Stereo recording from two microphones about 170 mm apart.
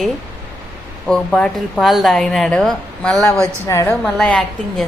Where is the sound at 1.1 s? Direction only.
5° left (ahead or behind).